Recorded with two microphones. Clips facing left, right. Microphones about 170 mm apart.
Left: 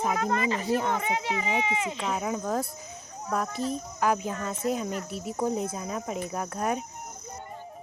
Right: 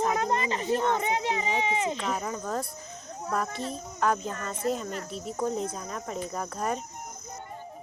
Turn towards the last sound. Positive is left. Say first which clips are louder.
# left 2 dB
turn(degrees=5)  # may be behind; listen again after turning